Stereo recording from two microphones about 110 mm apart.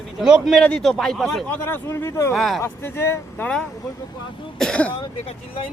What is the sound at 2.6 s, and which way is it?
Speech, 20° left (ahead or behind).